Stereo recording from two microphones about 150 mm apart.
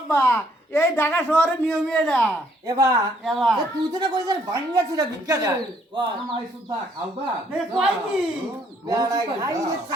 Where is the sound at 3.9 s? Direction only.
25° right (ahead or behind).